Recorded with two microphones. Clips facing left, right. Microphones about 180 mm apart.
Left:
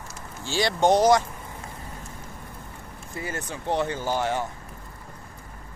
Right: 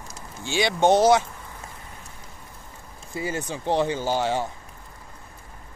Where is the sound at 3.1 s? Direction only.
15° right (ahead or behind).